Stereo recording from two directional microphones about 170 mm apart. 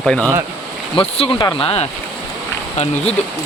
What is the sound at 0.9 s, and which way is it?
Speech, 35° left (ahead or behind).